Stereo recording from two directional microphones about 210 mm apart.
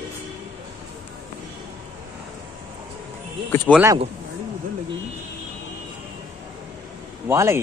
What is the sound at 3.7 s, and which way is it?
Speech, 10° right (ahead or behind).